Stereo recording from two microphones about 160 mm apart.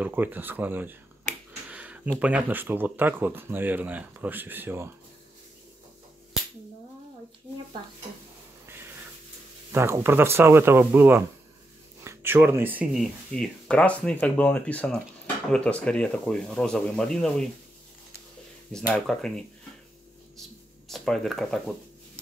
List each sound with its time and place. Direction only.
0.0 s speech: 10° right (ahead or behind)
1.7 s a sound: 10° right (ahead or behind)
2.1 s speech: 10° right (ahead or behind)
9.7 s speech: 15° right (ahead or behind); by 17.5 s 5° left (ahead or behind)
18.9 s speech: 5° left (ahead or behind)
20.9 s speech: centre (ahead or behind)